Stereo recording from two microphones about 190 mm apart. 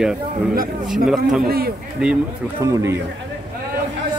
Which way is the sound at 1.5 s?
55° right (ahead or behind).